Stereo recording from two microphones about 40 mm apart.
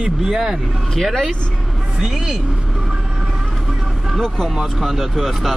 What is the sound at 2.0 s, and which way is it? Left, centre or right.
Speech, centre.